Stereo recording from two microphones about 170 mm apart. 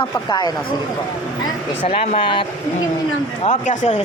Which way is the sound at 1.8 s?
35° left (ahead or behind).